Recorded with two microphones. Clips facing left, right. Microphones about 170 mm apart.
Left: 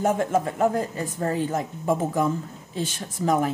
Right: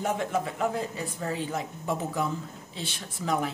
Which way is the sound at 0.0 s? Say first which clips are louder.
Left 6 dB; 45° left (ahead or behind).